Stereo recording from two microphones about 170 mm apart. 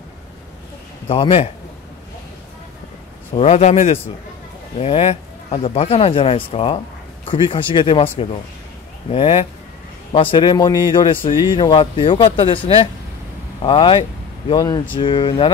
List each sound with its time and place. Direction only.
1.0 s speech: 30° left (ahead or behind)
3.3 s speech: 40° left (ahead or behind)
9.1 s speech: 35° left (ahead or behind)